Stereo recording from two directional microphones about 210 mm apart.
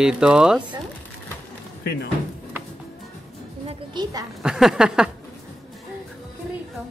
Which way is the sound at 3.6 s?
20° right (ahead or behind).